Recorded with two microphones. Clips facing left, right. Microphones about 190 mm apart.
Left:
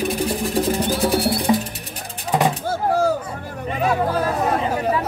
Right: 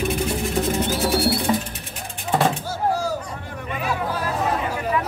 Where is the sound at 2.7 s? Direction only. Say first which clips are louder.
Left 4 dB; 55° left (ahead or behind).